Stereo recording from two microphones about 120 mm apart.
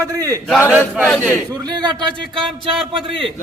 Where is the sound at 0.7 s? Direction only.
15° right (ahead or behind).